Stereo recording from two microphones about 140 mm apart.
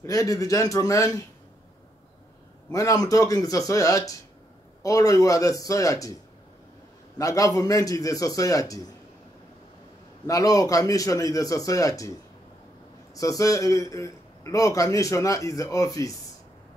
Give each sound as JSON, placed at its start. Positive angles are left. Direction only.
{"t": 0.0, "sound": "a man's voice", "side_deg": 25}
{"t": 2.7, "sound": "a man's voice", "side_deg": 25}
{"t": 7.2, "sound": "a man's voice", "side_deg": 25}
{"t": 10.2, "sound": "a man's voice", "side_deg": 25}
{"t": 13.1, "sound": "a man's voice", "side_deg": 25}